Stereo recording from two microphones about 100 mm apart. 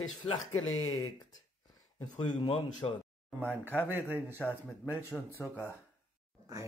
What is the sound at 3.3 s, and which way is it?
Speech, 20° right (ahead or behind).